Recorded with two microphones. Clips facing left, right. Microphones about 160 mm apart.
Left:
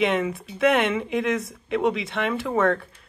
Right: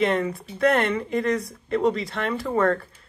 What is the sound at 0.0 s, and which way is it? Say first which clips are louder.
Speech: even; centre (ahead or behind).